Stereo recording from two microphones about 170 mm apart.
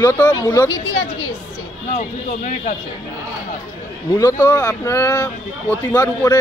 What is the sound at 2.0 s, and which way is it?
Speech, 45° left (ahead or behind).